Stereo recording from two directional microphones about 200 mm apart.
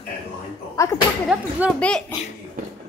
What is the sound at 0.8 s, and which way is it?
Speech, 15° left (ahead or behind).